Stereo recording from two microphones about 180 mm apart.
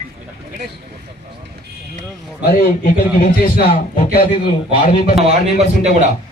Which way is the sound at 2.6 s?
55° left (ahead or behind).